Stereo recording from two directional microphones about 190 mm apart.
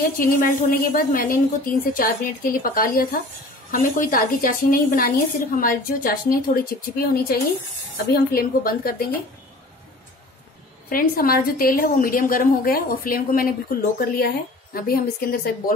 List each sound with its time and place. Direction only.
0.2 s a woman's voice: 45° left (ahead or behind)
10.9 s a woman's voice: 50° left (ahead or behind)